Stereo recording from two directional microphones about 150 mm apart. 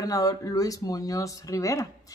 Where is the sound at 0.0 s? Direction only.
25° left (ahead or behind).